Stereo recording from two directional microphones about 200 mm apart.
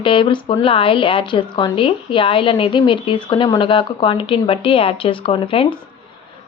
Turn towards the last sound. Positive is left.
turn(degrees=25)  # may be behind; listen again after turning